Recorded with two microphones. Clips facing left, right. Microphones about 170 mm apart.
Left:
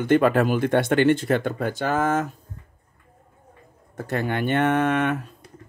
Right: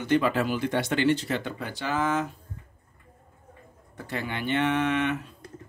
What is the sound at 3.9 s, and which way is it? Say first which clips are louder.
Speech: left 7 dB; 50° left (ahead or behind).